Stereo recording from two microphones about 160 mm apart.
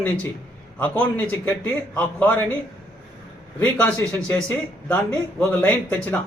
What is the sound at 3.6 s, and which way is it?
A man's voice, 10° left (ahead or behind).